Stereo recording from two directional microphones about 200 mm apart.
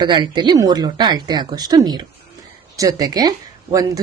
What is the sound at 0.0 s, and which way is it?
Speech, 20° right (ahead or behind).